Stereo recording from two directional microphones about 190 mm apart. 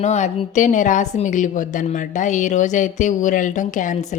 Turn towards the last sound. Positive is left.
turn(degrees=40)  # may be behind; listen again after turning